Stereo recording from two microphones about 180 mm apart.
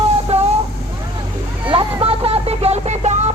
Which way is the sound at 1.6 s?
30° right (ahead or behind).